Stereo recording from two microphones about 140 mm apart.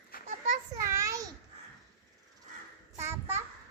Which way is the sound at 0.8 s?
20° right (ahead or behind).